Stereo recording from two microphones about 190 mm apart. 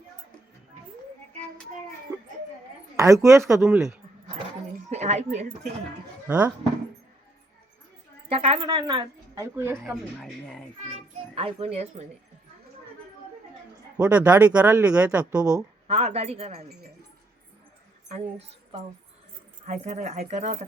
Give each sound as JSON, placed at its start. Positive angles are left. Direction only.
{"t": 3.0, "sound": "speech", "side_deg": -15}
{"t": 3.6, "sound": "speech", "side_deg": 0}
{"t": 4.9, "sound": "a woman's voice", "side_deg": -35}
{"t": 6.2, "sound": "speech", "side_deg": -10}
{"t": 8.3, "sound": "a woman's voice", "side_deg": -30}
{"t": 9.8, "sound": "speech", "side_deg": -5}
{"t": 11.3, "sound": "speech", "side_deg": -30}
{"t": 13.9, "sound": "speech", "side_deg": -5}
{"t": 15.9, "sound": "speech", "side_deg": -35}
{"t": 19.6, "sound": "speech", "side_deg": -40}